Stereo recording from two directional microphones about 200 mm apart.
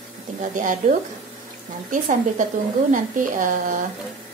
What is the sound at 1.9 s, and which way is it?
Speech, 40° right (ahead or behind).